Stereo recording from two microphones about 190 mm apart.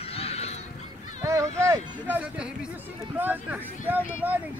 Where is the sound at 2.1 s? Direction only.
5° right (ahead or behind).